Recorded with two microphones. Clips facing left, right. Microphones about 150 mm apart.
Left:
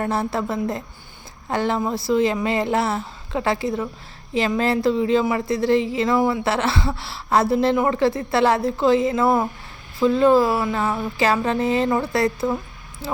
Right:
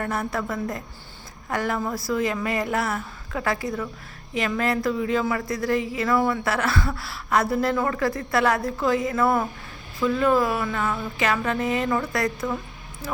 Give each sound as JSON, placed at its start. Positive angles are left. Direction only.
{"t": 0.0, "sound": "speech", "side_deg": 30}